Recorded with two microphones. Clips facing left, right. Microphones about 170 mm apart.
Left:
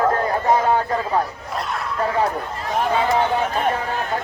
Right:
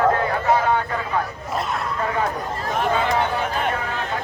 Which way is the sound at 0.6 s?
35° left (ahead or behind).